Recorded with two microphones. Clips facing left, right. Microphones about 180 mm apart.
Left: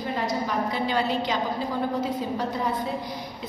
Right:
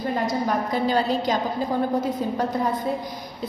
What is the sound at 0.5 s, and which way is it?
Speech, 40° right (ahead or behind).